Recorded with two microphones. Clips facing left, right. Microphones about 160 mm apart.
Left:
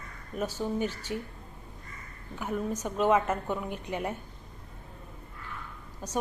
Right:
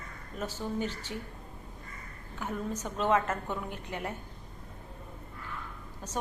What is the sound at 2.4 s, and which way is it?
A woman's voice, 15° left (ahead or behind).